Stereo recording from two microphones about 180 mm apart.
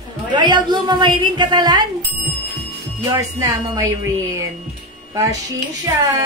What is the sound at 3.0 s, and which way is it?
Female singing, 15° right (ahead or behind).